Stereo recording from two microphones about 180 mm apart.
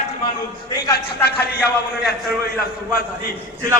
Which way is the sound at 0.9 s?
60° left (ahead or behind).